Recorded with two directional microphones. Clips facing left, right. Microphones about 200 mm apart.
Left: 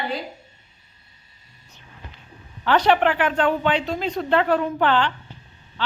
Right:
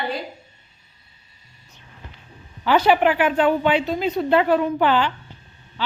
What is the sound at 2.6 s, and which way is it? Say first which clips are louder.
A woman's voice: right 1 dB; 5° right (ahead or behind).